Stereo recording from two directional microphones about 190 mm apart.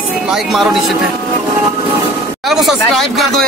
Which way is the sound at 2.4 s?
Centre (ahead or behind).